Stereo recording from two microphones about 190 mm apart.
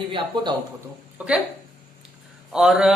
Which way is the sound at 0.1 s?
25° right (ahead or behind).